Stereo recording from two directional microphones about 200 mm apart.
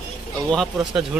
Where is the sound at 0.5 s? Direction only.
Centre (ahead or behind).